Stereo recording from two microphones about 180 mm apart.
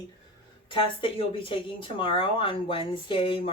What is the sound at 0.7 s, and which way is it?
Speech, 30° left (ahead or behind).